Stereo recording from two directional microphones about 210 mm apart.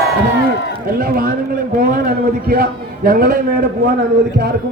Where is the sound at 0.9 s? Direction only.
45° right (ahead or behind).